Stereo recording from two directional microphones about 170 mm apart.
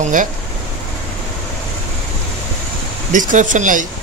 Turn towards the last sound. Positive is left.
turn(degrees=-50)  # may be behind; listen again after turning